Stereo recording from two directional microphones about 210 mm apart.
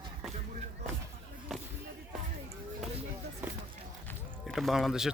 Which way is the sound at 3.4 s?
10° right (ahead or behind).